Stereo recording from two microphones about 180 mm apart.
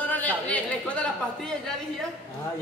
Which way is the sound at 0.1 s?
10° left (ahead or behind).